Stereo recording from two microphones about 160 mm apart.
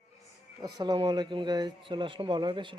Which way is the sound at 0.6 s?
30° right (ahead or behind).